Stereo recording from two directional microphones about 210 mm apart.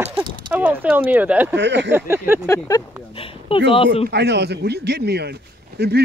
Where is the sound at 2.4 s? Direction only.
15° left (ahead or behind).